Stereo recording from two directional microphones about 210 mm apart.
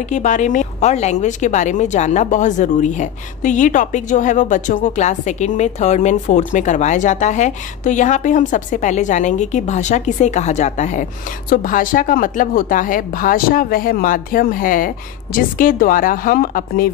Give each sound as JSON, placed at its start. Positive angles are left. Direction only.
{"t": 0.1, "sound": "speech", "side_deg": 35}